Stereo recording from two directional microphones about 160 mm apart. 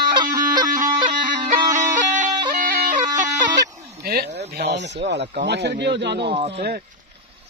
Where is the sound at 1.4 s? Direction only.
30° right (ahead or behind).